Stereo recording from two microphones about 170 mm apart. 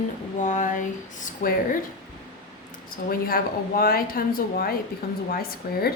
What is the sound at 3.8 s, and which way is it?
A woman's voice, 60° left (ahead or behind).